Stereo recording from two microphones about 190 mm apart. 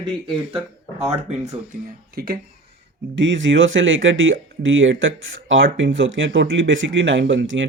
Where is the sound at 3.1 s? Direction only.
75° right (ahead or behind).